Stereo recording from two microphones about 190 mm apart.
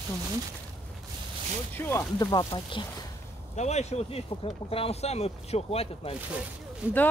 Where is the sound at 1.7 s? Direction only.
10° left (ahead or behind).